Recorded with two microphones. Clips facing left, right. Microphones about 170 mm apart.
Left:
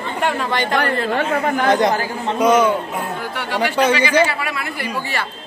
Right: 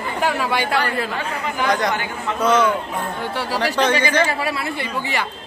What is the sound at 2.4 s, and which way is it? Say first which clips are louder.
Speech: left 3 dB; 10° left (ahead or behind).